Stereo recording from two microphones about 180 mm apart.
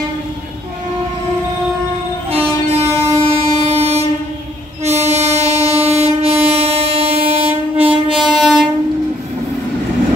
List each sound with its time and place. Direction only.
2.7 s train: 35° right (ahead or behind)
8.2 s train: centre (ahead or behind)